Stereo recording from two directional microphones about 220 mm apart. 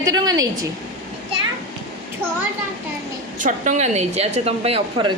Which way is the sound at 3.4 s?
35° right (ahead or behind).